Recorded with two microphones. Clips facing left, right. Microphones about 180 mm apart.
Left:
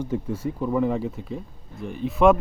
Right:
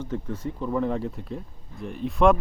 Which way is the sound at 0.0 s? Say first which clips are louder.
Left 4 dB; 10° left (ahead or behind).